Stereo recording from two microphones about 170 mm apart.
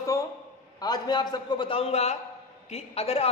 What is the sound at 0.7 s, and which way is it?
A man's voice, 25° left (ahead or behind).